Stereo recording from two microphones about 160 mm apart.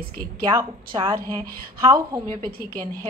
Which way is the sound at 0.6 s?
25° right (ahead or behind).